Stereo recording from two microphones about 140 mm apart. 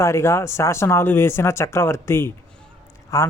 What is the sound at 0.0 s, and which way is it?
Speech, 20° left (ahead or behind).